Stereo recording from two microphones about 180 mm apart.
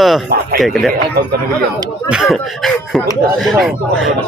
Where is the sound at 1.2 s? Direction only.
60° right (ahead or behind).